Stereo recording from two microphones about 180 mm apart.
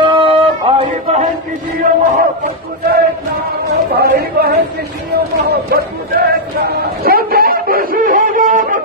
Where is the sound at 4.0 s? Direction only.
60° right (ahead or behind).